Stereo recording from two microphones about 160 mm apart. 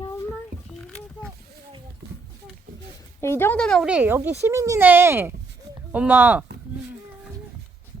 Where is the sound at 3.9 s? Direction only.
10° right (ahead or behind).